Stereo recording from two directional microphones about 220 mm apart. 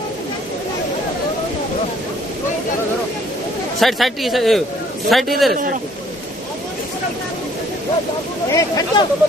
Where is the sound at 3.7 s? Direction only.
Centre (ahead or behind).